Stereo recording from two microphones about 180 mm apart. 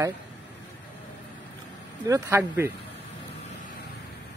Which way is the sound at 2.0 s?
15° right (ahead or behind).